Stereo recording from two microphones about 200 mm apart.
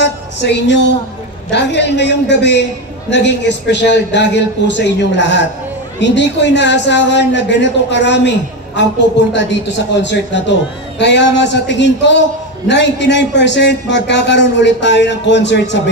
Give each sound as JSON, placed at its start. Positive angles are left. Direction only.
{"t": 0.0, "sound": "music", "side_deg": 60}
{"t": 1.5, "sound": "a man's voice", "side_deg": 60}
{"t": 9.3, "sound": "a man's voice", "side_deg": 65}